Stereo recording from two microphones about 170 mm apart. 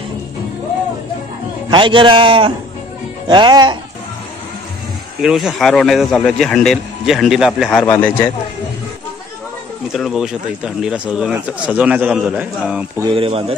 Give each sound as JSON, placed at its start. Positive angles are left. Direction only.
{"t": 1.7, "sound": "a man's voice", "side_deg": -30}
{"t": 5.2, "sound": "speech", "side_deg": -5}
{"t": 7.8, "sound": "a man's voice", "side_deg": 10}
{"t": 9.9, "sound": "speech", "side_deg": 0}
{"t": 13.1, "sound": "speech", "side_deg": -30}